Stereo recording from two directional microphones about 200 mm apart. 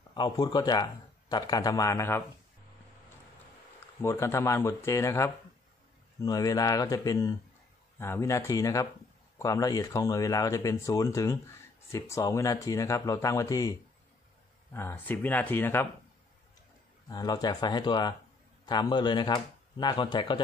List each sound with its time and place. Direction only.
0.1 s speech: 20° left (ahead or behind)
4.0 s speech: 15° left (ahead or behind)
17.1 s speech: 20° left (ahead or behind)